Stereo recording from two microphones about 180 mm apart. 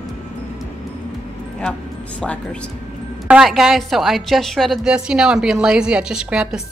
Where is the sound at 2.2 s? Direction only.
5° left (ahead or behind).